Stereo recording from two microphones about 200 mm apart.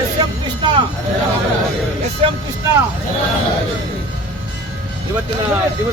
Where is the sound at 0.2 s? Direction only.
20° right (ahead or behind).